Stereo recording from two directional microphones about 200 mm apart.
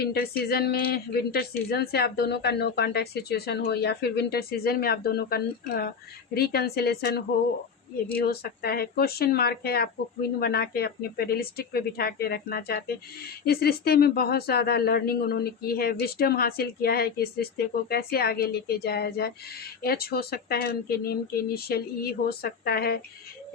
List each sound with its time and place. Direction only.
0.0 s speech: 50° left (ahead or behind)
8.2 s speech: 50° left (ahead or behind)